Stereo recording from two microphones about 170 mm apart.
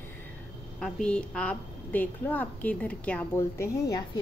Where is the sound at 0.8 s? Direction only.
5° left (ahead or behind).